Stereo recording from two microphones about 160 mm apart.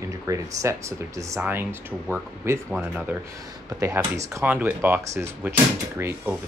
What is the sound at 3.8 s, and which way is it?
Speech, 20° right (ahead or behind).